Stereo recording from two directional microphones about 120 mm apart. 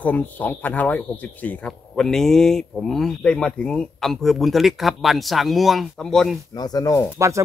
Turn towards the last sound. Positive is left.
turn(degrees=-25)  # may be behind; listen again after turning